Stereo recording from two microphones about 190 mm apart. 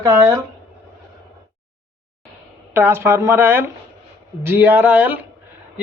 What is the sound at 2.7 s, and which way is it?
Speech, 10° right (ahead or behind).